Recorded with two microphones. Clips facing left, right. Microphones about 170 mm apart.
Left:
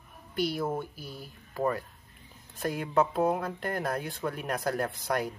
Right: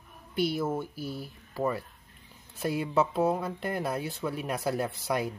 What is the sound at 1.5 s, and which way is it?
Speech, 5° right (ahead or behind).